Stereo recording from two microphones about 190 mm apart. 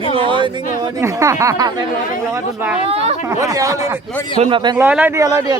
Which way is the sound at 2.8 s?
35° right (ahead or behind).